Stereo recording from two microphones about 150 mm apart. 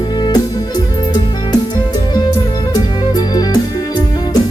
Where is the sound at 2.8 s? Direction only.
25° left (ahead or behind).